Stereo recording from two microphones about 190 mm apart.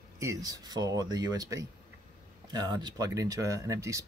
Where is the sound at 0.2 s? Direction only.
15° right (ahead or behind).